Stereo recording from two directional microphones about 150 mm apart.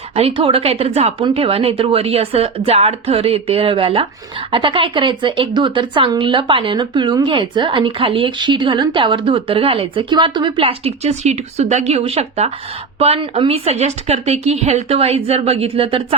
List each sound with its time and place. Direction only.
0.1 s a woman's voice: 40° right (ahead or behind)